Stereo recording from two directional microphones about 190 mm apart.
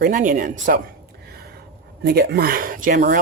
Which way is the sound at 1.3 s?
55° right (ahead or behind).